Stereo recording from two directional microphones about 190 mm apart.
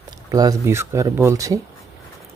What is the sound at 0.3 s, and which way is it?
Speech, 20° right (ahead or behind).